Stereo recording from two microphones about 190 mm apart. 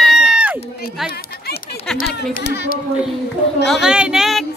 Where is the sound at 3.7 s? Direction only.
5° right (ahead or behind).